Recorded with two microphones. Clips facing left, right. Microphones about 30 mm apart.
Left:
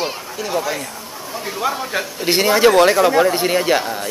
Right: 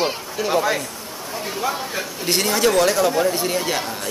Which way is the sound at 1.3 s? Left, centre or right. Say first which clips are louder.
Left 1 dB; centre.